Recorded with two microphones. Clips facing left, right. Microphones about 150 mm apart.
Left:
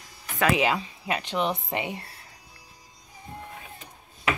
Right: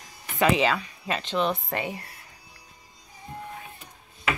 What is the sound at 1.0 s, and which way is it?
Speech, 15° left (ahead or behind).